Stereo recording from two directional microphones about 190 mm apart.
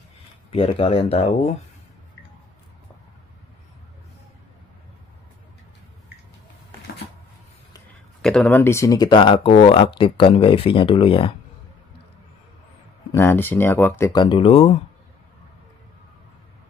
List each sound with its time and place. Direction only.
0.5 s speech: 30° left (ahead or behind)
8.2 s speech: 5° left (ahead or behind); by 11.3 s 30° left (ahead or behind)
13.1 s speech: 10° left (ahead or behind); by 14.8 s 30° left (ahead or behind)